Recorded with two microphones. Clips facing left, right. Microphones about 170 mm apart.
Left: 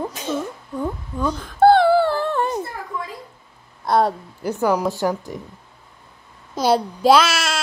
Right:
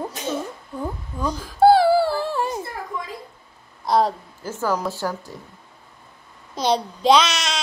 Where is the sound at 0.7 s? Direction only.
5° right (ahead or behind).